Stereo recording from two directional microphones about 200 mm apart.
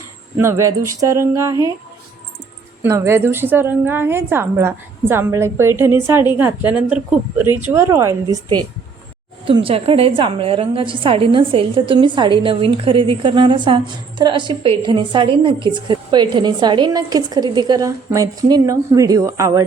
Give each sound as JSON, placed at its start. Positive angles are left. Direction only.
{"t": 0.3, "sound": "a woman's voice", "side_deg": -15}
{"t": 2.8, "sound": "a woman's voice", "side_deg": -15}